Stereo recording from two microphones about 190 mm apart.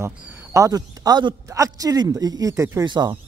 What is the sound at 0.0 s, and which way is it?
A man's voice, 15° right (ahead or behind).